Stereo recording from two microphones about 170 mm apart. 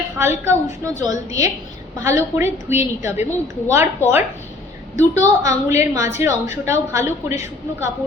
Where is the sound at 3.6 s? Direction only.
15° right (ahead or behind).